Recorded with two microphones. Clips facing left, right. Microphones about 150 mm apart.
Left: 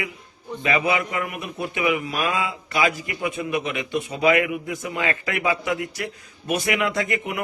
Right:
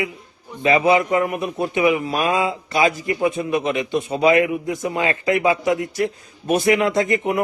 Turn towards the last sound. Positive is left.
turn(degrees=-30)  # may be behind; listen again after turning